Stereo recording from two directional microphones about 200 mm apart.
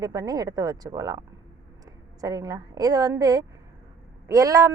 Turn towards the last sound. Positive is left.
turn(degrees=-15)  # may be behind; listen again after turning